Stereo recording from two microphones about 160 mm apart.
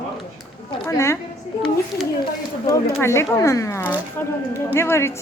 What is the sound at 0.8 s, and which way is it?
Speech, 15° left (ahead or behind).